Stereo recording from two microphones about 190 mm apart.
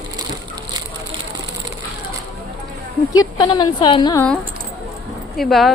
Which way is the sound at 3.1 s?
20° left (ahead or behind).